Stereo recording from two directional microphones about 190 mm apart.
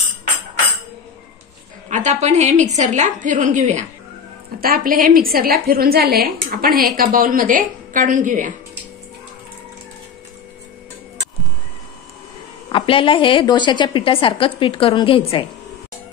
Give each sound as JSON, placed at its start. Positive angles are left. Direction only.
{"t": 1.9, "sound": "a woman's voice", "side_deg": -40}
{"t": 12.7, "sound": "a woman's voice", "side_deg": 25}